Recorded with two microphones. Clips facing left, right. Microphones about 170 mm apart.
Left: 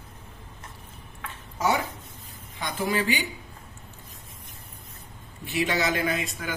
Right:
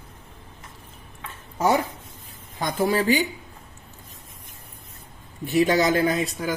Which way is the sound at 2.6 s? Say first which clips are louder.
Right 5 dB; 40° right (ahead or behind).